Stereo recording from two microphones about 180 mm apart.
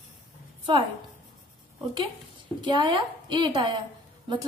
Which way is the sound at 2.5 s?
25° right (ahead or behind).